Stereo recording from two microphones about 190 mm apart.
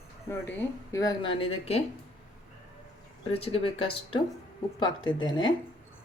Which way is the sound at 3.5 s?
30° left (ahead or behind).